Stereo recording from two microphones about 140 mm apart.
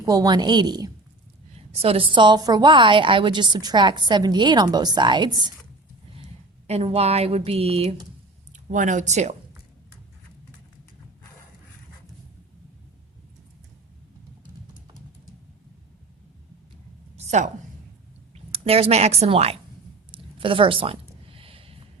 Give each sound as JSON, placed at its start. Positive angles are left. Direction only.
{"t": 0.0, "sound": "a woman's voice", "side_deg": -25}
{"t": 1.7, "sound": "a woman's voice", "side_deg": -45}
{"t": 6.7, "sound": "a woman's voice", "side_deg": -50}
{"t": 8.5, "sound": "speech", "side_deg": -65}
{"t": 17.2, "sound": "a sound", "side_deg": -55}
{"t": 18.5, "sound": "a woman's voice", "side_deg": -45}
{"t": 20.1, "sound": "a sound", "side_deg": -40}